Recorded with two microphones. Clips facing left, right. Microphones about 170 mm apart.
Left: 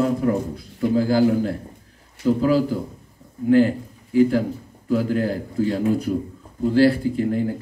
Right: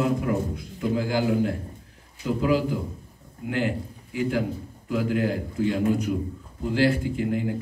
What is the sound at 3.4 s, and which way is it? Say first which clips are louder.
A man's voice: left 10 dB; 35° left (ahead or behind).